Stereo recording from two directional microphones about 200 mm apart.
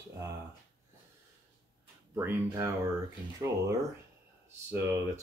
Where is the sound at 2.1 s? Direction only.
15° right (ahead or behind).